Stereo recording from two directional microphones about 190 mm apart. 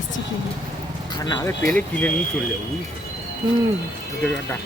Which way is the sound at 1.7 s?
5° left (ahead or behind).